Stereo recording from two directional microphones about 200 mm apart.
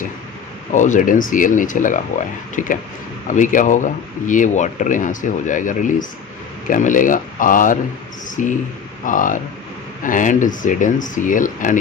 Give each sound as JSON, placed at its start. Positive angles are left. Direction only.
{"t": 0.7, "sound": "speech", "side_deg": 40}